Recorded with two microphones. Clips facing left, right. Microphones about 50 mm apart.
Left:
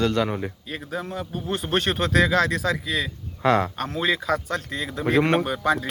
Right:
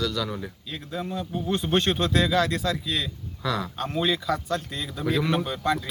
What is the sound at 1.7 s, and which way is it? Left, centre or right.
Speech, left.